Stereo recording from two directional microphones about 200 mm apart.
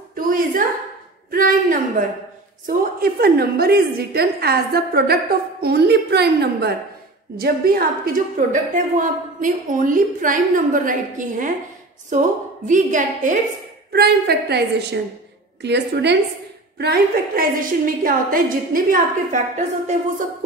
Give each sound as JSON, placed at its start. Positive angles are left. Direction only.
{"t": 0.1, "sound": "a sound", "side_deg": -45}
{"t": 1.3, "sound": "a woman's voice", "side_deg": -45}
{"t": 13.9, "sound": "a woman's voice", "side_deg": -55}